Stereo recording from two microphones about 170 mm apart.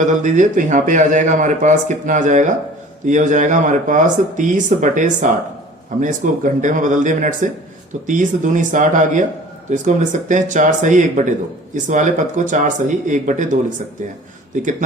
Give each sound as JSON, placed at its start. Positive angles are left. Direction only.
{"t": 0.0, "sound": "speech", "side_deg": -45}